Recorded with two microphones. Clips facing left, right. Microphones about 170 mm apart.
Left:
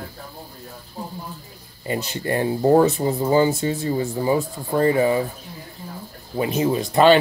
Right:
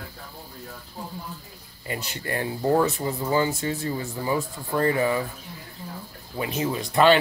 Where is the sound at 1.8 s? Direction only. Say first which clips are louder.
Left 7 dB; 25° left (ahead or behind).